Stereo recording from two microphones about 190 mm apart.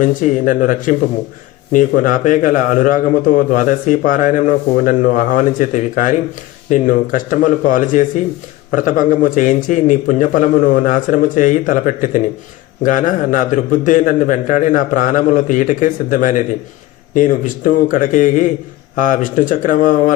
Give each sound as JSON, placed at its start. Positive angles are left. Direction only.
{"t": 0.0, "sound": "a man's voice", "side_deg": 45}